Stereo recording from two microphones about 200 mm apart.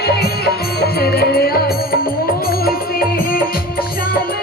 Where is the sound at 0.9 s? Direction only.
50° left (ahead or behind).